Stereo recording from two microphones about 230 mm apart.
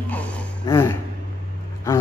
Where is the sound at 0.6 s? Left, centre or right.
Centre.